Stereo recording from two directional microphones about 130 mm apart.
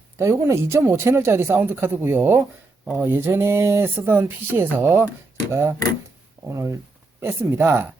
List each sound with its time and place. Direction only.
0.2 s speech: 20° right (ahead or behind)